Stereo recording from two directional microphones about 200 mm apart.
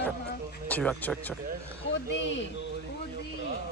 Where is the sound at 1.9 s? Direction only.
65° left (ahead or behind).